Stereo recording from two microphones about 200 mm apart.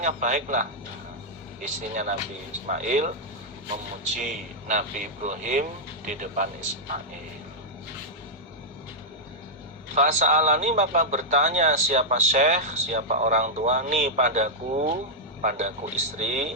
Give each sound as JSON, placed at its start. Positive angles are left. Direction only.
{"t": 0.0, "sound": "a man's voice", "side_deg": -40}
{"t": 4.7, "sound": "a man's voice", "side_deg": -35}
{"t": 9.9, "sound": "a man's voice", "side_deg": -35}